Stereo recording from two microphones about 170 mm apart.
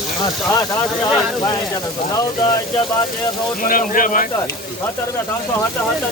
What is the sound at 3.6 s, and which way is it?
Speech, 55° left (ahead or behind).